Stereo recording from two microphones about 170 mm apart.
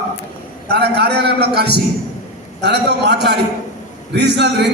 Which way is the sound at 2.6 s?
85° right.